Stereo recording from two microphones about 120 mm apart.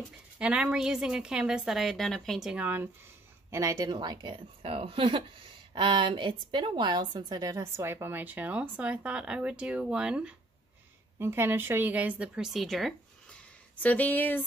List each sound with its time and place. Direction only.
0.4 s a woman's voice: 10° right (ahead or behind)
2.5 s a woman's voice: 15° right (ahead or behind)
3.4 s a woman's voice: 25° right (ahead or behind); by 10.3 s 10° right (ahead or behind)
11.1 s a woman's voice: 20° right (ahead or behind); by 13.4 s centre (ahead or behind)
13.8 s speech: 15° left (ahead or behind)